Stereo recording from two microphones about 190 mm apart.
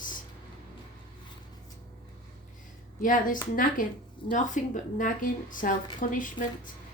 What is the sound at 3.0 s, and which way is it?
A woman's voice, 45° left (ahead or behind).